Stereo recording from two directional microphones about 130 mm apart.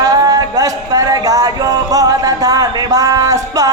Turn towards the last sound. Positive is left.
turn(degrees=-25)  # may be behind; listen again after turning